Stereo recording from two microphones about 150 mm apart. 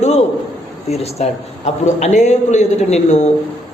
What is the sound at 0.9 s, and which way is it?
A man's voice, 45° left (ahead or behind).